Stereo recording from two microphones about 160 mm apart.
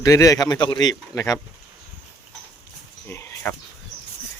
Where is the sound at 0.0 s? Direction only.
20° left (ahead or behind).